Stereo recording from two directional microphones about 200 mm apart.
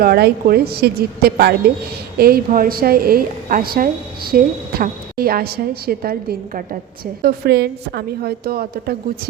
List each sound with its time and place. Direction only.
0.0 s a woman's voice: 50° right (ahead or behind)